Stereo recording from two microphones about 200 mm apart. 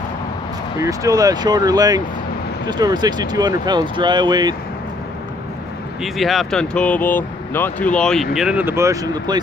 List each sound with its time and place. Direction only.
0.7 s speech: 15° right (ahead or behind)
6.0 s speech: centre (ahead or behind); by 9.4 s 20° right (ahead or behind)